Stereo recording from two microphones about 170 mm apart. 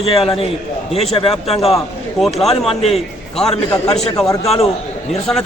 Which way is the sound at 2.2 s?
Centre (ahead or behind).